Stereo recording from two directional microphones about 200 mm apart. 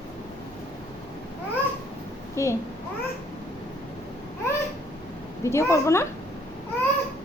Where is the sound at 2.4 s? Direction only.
15° left (ahead or behind).